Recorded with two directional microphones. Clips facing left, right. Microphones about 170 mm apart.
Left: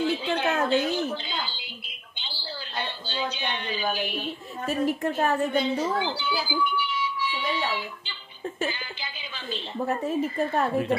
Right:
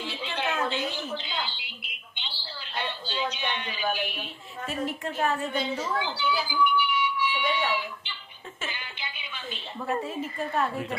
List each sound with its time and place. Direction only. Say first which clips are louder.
0.0 s squawk: left 7 dB; 45° left (ahead or behind)
3.1 s a sound: left 1 dB; 35° left (ahead or behind)
4.6 s speech: left 6 dB; 40° left (ahead or behind)
9.8 s speech: left 3 dB; 40° left (ahead or behind)